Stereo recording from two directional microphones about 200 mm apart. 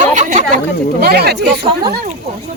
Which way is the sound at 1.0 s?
55° right (ahead or behind).